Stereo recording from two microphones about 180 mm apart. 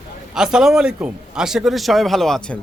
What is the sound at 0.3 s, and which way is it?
Speech, 5° right (ahead or behind).